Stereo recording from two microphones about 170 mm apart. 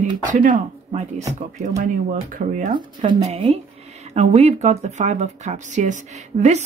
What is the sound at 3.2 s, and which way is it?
Speech, 40° right (ahead or behind).